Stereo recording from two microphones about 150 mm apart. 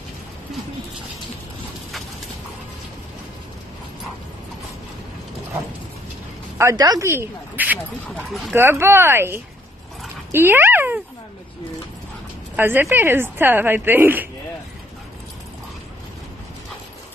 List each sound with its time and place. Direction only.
6.6 s speech: 25° right (ahead or behind)
10.3 s dog: 15° right (ahead or behind)
12.5 s speech: 15° right (ahead or behind)